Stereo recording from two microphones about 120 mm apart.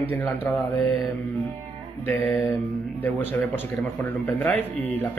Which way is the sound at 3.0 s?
15° left (ahead or behind).